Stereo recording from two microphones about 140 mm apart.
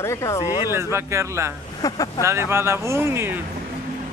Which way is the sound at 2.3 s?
20° right (ahead or behind).